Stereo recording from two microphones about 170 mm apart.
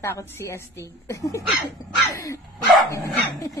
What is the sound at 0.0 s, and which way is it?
A woman's voice, 15° left (ahead or behind).